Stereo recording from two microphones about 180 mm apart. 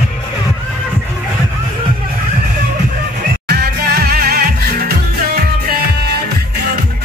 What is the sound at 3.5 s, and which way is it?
Music, 65° right (ahead or behind).